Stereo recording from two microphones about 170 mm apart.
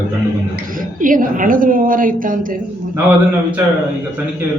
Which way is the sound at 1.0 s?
50° right (ahead or behind).